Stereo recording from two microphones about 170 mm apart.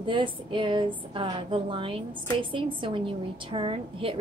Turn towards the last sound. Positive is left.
turn(degrees=-30)  # may be behind; listen again after turning